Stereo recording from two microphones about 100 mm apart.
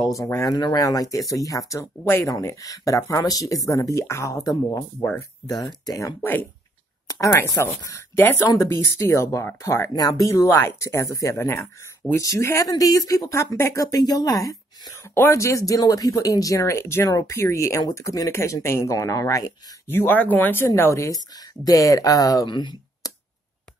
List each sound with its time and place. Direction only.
0.1 s speech: 35° left (ahead or behind)
5.9 s speech: 35° left (ahead or behind)
7.1 s a sound: 35° left (ahead or behind)
7.4 s speech: 30° left (ahead or behind)
19.9 s speech: 20° left (ahead or behind); by 22.5 s 35° left (ahead or behind)
22.5 s a sound: 50° left (ahead or behind)